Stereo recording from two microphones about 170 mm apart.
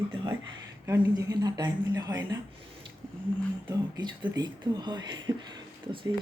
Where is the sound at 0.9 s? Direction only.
20° right (ahead or behind).